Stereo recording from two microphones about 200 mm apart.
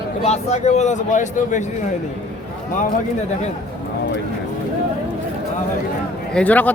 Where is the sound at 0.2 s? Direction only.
35° left (ahead or behind).